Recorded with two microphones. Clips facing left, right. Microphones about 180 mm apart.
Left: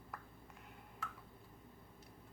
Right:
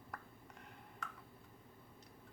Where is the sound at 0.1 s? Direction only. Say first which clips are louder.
Right 1 dB; centre (ahead or behind).